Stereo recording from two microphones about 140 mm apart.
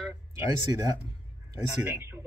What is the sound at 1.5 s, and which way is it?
Speech, 15° right (ahead or behind).